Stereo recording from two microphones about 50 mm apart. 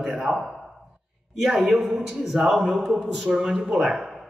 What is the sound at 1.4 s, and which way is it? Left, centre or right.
A man's voice, centre.